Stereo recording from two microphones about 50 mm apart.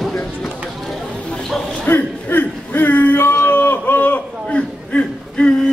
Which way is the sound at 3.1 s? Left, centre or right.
Left.